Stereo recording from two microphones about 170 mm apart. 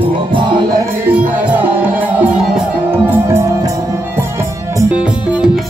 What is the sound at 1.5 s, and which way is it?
Music, 10° right (ahead or behind).